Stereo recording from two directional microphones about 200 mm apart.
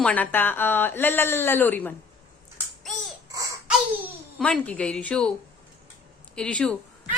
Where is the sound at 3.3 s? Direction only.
15° right (ahead or behind).